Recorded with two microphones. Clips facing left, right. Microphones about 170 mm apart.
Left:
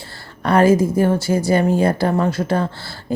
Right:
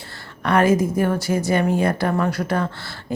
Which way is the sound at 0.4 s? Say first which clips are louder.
Left 3 dB; 30° left (ahead or behind).